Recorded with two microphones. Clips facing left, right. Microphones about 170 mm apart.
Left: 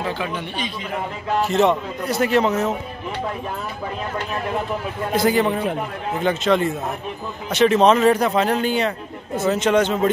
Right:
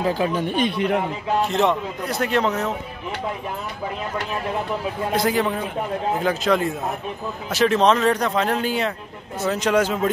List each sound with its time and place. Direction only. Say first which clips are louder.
0.0 s speech: right 4 dB; 40° right (ahead or behind); by 1.0 s 65° right (ahead or behind)
1.4 s speech: left 4 dB; centre (ahead or behind)
5.1 s speech: left 4 dB; centre (ahead or behind)